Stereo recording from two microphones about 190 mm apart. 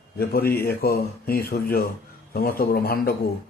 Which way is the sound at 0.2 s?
55° left (ahead or behind).